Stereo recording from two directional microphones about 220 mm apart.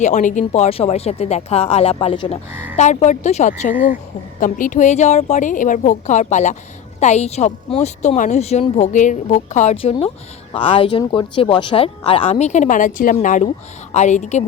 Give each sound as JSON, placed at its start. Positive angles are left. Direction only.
{"t": 0.0, "sound": "a woman's voice", "side_deg": 35}